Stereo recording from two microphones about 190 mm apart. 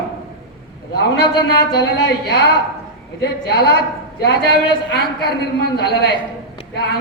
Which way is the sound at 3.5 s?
55° left (ahead or behind).